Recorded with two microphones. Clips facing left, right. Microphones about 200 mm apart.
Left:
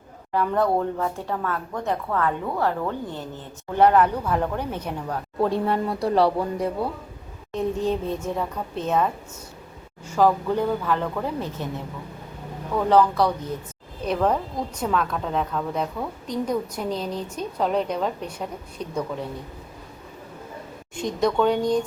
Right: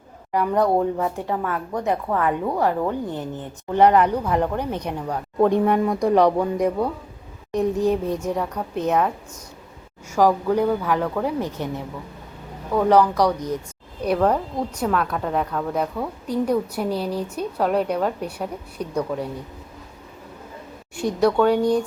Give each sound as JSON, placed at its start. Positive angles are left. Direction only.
{"t": 0.3, "sound": "speech", "side_deg": -15}
{"t": 10.1, "sound": "speech", "side_deg": -10}
{"t": 12.9, "sound": "speech", "side_deg": -15}
{"t": 20.9, "sound": "speech", "side_deg": -10}